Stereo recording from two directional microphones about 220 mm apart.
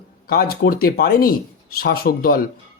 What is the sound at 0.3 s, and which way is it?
Speech, 45° left (ahead or behind).